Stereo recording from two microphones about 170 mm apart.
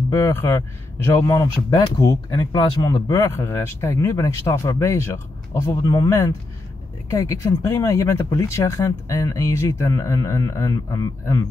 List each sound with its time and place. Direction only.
0.1 s speech: 15° left (ahead or behind)